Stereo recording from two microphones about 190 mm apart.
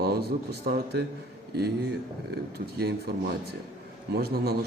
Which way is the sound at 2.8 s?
55° right (ahead or behind).